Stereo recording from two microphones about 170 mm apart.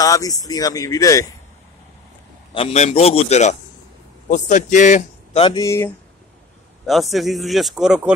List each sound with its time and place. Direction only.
0.0 s speech: 20° left (ahead or behind)
2.5 s a man's voice: 35° left (ahead or behind)
5.4 s speech: 25° left (ahead or behind)
6.9 s speech: centre (ahead or behind)